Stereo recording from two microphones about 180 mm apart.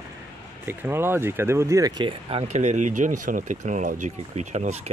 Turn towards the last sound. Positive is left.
turn(degrees=-40)  # may be behind; listen again after turning